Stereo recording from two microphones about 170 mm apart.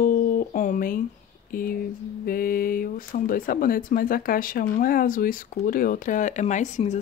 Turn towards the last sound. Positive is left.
turn(degrees=45)  # may be behind; listen again after turning